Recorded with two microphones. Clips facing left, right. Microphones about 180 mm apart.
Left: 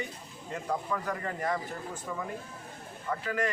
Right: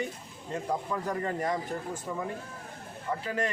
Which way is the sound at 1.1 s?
30° right (ahead or behind).